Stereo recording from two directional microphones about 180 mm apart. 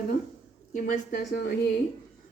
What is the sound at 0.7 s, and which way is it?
Speech, 50° left (ahead or behind).